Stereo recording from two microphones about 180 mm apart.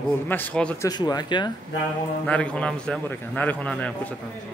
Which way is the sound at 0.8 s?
20° left (ahead or behind).